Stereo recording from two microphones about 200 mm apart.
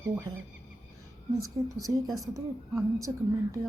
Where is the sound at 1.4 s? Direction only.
15° right (ahead or behind).